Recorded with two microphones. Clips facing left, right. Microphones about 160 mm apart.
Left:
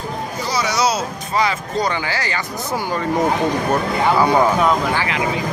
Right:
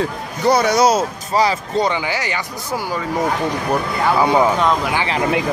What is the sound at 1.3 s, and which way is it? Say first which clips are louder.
Speech: right 3 dB; 35° right (ahead or behind).